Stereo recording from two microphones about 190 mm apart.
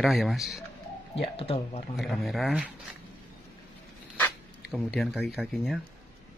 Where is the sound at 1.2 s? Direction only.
30° left (ahead or behind).